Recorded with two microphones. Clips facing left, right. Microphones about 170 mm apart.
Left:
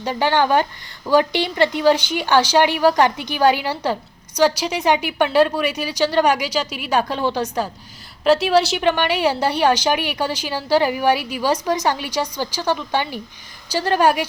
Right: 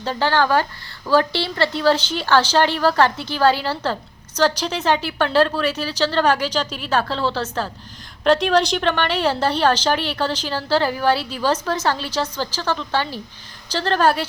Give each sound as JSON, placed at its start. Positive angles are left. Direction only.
{"t": 0.0, "sound": "a woman's voice", "side_deg": 15}